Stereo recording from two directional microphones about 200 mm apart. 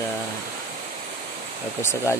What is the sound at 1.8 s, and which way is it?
Speech, 10° left (ahead or behind).